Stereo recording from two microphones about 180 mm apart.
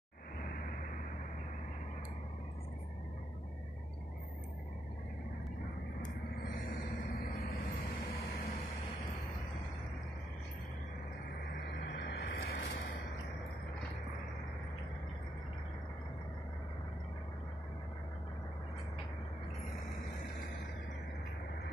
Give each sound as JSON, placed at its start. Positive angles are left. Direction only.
{"t": 6.7, "sound": "vehicle", "side_deg": 50}
{"t": 11.7, "sound": "vehicle", "side_deg": 65}